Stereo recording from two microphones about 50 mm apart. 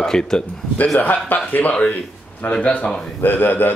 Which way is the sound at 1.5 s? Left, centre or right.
Left.